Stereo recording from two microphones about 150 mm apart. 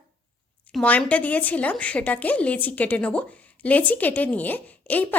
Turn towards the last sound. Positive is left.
turn(degrees=10)  # may be behind; listen again after turning